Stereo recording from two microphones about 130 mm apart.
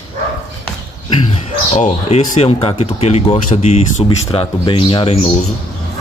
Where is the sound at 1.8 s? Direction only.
55° left (ahead or behind).